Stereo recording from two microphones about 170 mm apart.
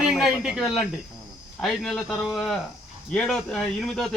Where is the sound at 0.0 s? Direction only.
Centre (ahead or behind).